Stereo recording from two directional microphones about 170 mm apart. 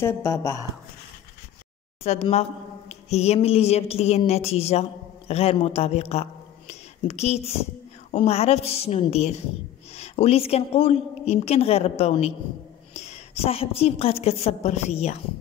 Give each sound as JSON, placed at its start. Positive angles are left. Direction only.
{"t": 0.0, "sound": "a woman's voice", "side_deg": 15}
{"t": 2.0, "sound": "a woman's voice", "side_deg": 40}
{"t": 2.9, "sound": "a sound", "side_deg": 40}
{"t": 3.3, "sound": "a woman's voice", "side_deg": 35}
{"t": 6.7, "sound": "a sound", "side_deg": 40}
{"t": 8.1, "sound": "a woman's voice", "side_deg": 35}